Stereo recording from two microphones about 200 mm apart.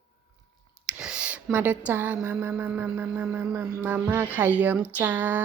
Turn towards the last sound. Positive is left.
turn(degrees=-10)  # may be behind; listen again after turning